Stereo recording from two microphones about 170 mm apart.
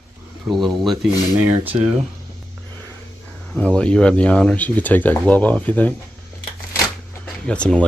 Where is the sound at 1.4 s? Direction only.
10° right (ahead or behind).